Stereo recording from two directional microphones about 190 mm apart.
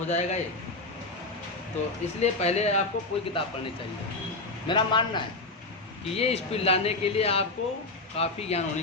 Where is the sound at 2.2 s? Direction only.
35° left (ahead or behind).